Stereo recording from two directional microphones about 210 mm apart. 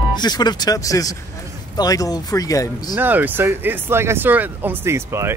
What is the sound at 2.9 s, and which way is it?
Speech, 10° right (ahead or behind).